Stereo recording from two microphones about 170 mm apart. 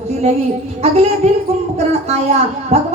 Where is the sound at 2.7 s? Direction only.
40° right (ahead or behind).